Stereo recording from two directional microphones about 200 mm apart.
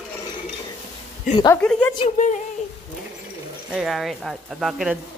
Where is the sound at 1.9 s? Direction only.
35° left (ahead or behind).